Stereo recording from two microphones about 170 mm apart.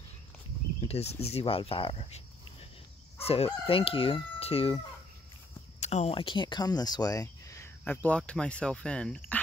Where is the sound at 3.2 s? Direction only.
35° left (ahead or behind).